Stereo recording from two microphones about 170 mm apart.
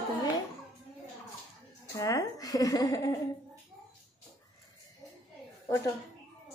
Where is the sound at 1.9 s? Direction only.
20° left (ahead or behind).